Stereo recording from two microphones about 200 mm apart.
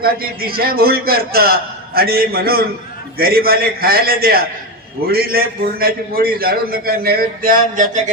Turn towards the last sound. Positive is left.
turn(degrees=-40)  # may be behind; listen again after turning